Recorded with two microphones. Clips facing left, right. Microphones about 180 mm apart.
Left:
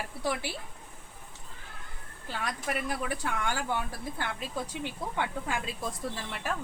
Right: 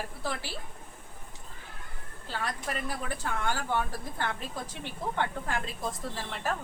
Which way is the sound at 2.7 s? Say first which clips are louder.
Left 6 dB; 10° left (ahead or behind).